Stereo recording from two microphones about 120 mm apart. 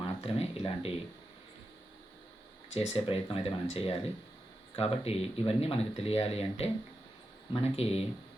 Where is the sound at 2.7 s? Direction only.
60° left (ahead or behind).